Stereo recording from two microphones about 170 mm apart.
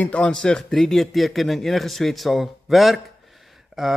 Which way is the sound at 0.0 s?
5° left (ahead or behind).